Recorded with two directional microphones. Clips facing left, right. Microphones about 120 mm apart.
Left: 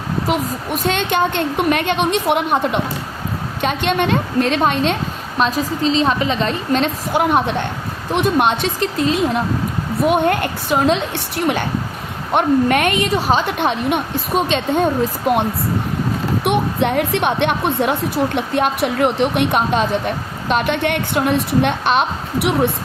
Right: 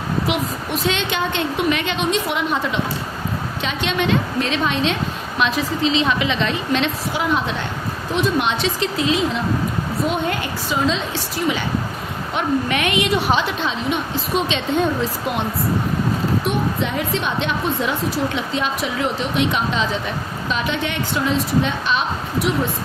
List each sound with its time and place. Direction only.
0.3 s a woman's voice: 50° left (ahead or behind)
5.4 s a woman's voice: 40° left (ahead or behind)
13.6 s a woman's voice: 55° left (ahead or behind)
16.4 s a woman's voice: 60° left (ahead or behind)